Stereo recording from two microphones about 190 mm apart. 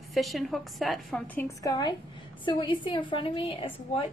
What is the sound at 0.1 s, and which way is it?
A woman's voice, centre (ahead or behind).